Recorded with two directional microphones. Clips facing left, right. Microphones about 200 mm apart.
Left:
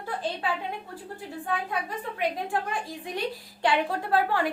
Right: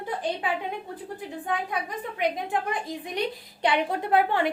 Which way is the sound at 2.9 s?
20° right (ahead or behind).